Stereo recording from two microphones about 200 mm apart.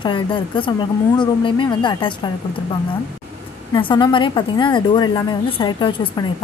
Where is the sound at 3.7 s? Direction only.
25° left (ahead or behind).